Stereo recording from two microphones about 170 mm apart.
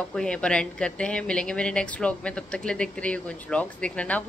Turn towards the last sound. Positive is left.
turn(degrees=10)  # may be behind; listen again after turning